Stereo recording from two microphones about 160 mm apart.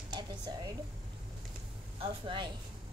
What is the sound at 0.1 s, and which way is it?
Speech, 25° right (ahead or behind).